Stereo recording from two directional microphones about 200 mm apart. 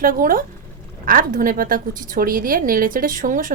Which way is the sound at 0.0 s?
45° right (ahead or behind).